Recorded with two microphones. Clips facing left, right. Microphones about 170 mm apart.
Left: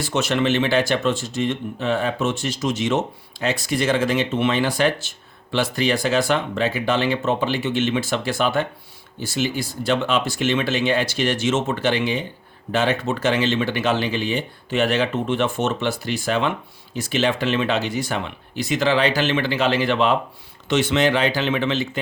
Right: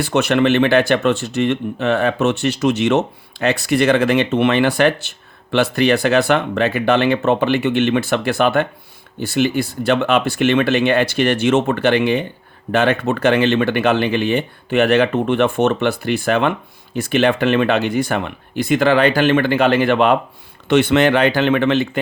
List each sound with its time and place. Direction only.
0.0 s speech: 60° right (ahead or behind)